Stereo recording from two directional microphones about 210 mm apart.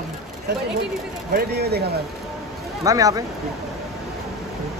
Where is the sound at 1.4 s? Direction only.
50° right (ahead or behind).